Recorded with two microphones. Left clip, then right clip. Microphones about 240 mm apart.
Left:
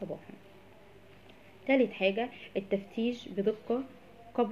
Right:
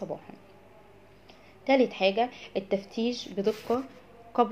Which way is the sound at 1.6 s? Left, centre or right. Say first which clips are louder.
Right 4 dB; right.